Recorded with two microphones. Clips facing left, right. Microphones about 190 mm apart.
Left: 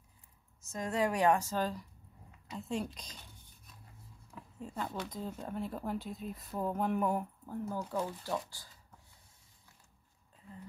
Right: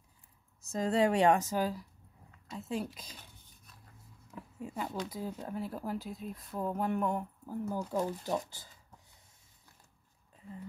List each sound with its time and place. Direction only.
0.7 s a woman's voice: 30° right (ahead or behind); by 3.2 s 5° right (ahead or behind)
4.6 s speech: 10° right (ahead or behind)
7.4 s speech: 10° right (ahead or behind)